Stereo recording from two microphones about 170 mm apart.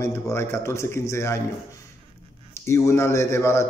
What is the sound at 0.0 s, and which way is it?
A man's voice, 15° left (ahead or behind).